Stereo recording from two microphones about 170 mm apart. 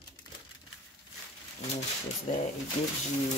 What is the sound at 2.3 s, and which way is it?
Speech, 45° left (ahead or behind).